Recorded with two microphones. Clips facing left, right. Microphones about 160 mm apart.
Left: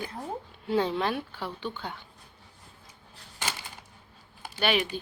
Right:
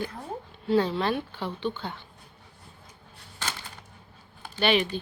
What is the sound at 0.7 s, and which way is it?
Speech, 15° left (ahead or behind).